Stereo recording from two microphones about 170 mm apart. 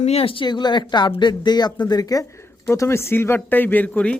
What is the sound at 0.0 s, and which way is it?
Speech, 35° left (ahead or behind).